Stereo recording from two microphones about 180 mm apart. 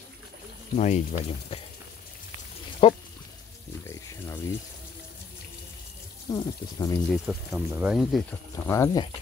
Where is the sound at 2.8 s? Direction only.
35° left (ahead or behind).